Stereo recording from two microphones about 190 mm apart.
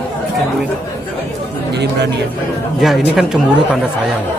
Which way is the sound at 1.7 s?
65° right (ahead or behind).